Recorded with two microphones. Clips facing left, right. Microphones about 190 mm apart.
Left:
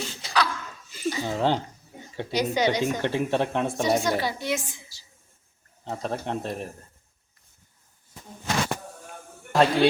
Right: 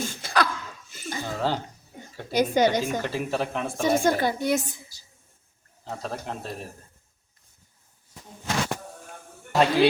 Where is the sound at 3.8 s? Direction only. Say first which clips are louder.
Right 4 dB; 50° right (ahead or behind).